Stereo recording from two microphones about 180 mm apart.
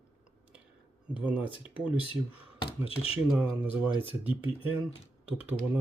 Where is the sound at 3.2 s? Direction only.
5° right (ahead or behind).